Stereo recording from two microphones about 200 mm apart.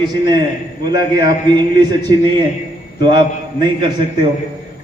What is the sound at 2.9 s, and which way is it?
Speech, 20° right (ahead or behind).